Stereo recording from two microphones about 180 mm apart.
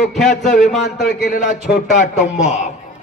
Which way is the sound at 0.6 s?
Centre (ahead or behind).